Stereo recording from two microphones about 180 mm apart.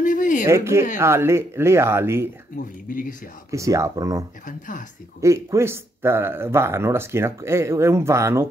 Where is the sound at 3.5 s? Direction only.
15° right (ahead or behind).